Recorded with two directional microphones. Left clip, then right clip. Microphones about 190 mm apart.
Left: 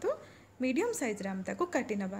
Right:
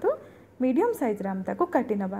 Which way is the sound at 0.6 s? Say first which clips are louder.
Right 8 dB; 5° left (ahead or behind).